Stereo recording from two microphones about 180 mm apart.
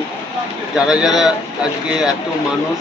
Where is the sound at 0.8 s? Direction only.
5° right (ahead or behind).